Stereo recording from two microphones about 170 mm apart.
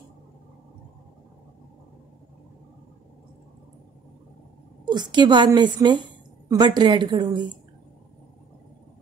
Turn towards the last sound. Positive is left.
turn(degrees=-25)  # may be behind; listen again after turning